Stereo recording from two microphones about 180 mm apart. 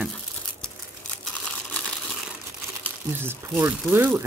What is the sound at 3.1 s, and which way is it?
Speech, 10° right (ahead or behind).